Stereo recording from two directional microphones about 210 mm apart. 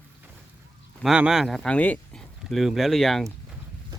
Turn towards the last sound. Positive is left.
turn(degrees=0)  # may be behind; listen again after turning